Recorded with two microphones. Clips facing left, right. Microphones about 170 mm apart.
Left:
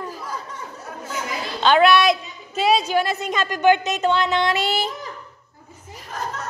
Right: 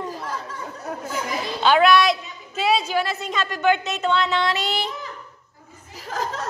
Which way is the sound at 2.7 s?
20° left (ahead or behind).